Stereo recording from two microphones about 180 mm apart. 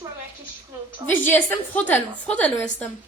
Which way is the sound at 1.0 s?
25° right (ahead or behind).